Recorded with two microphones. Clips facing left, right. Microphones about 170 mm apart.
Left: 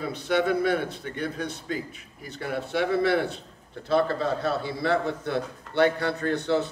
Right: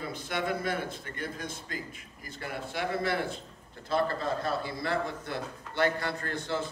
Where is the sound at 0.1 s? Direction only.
70° left (ahead or behind).